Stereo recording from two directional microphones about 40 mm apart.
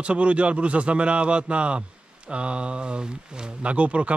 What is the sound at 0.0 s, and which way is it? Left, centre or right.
A man's voice, right.